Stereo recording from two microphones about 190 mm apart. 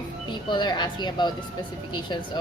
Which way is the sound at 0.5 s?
25° left (ahead or behind).